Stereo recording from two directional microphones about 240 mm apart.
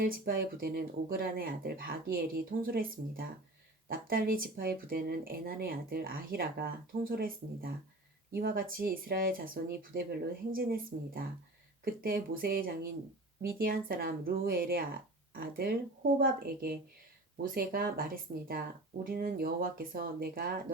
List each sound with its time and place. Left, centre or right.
0.0 s speech: right